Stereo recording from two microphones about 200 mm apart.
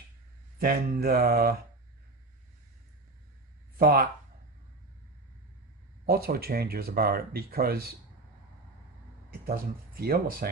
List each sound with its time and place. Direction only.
0.6 s speech: 50° right (ahead or behind)
3.8 s speech: 50° right (ahead or behind)
6.1 s speech: 50° right (ahead or behind)
9.5 s speech: 50° right (ahead or behind)